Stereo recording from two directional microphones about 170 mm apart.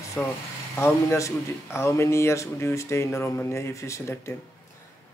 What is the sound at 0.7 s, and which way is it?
A man's voice, 15° left (ahead or behind).